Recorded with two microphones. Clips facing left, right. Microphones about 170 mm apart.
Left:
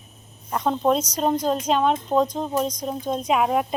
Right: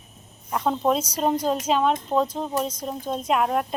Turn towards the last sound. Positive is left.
turn(degrees=5)  # may be behind; listen again after turning